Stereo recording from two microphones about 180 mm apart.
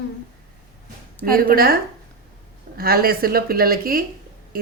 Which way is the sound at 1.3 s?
55° right (ahead or behind).